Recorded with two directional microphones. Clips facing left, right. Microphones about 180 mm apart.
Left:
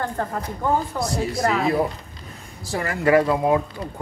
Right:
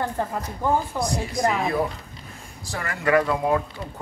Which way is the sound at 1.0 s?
15° right (ahead or behind).